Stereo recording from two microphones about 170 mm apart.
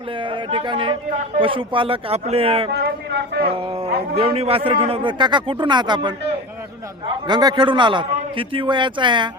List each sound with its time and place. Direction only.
0.2 s speech: 30° right (ahead or behind)
2.7 s a sound: 70° right (ahead or behind)
3.6 s speech: 35° right (ahead or behind)
7.3 s speech: 25° right (ahead or behind)